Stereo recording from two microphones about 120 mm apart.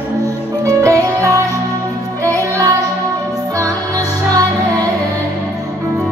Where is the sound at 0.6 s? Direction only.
30° right (ahead or behind).